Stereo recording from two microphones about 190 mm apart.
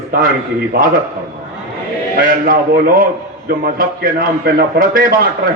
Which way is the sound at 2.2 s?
50° right (ahead or behind).